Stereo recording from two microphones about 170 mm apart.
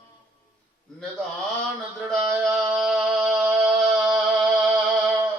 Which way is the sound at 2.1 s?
Centre (ahead or behind).